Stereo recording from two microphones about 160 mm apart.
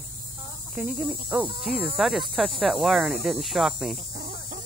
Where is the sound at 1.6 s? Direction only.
5° right (ahead or behind).